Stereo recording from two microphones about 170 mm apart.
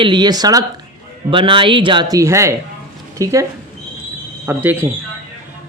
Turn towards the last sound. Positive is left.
turn(degrees=-10)  # may be behind; listen again after turning